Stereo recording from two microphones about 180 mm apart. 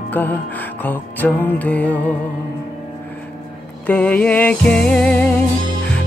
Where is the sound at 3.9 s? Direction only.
5° left (ahead or behind).